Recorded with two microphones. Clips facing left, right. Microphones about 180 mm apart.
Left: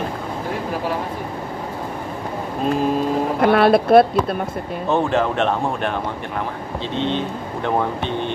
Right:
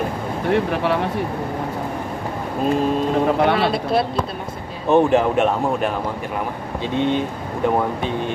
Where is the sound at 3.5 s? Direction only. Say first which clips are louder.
Left 7 dB; 55° left (ahead or behind).